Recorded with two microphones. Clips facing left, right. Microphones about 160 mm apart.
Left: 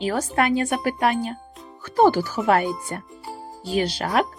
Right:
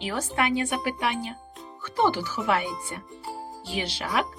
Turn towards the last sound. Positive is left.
turn(degrees=45)  # may be behind; listen again after turning